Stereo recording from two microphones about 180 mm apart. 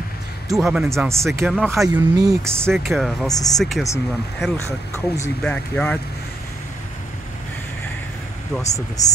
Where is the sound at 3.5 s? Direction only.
Centre (ahead or behind).